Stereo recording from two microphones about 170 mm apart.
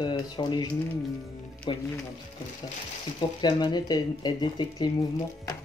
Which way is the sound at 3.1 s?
25° left (ahead or behind).